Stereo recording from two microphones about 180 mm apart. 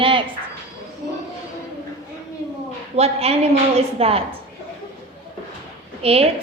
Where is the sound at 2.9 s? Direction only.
35° right (ahead or behind).